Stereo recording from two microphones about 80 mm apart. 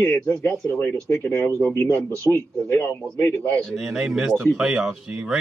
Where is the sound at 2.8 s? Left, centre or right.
Left.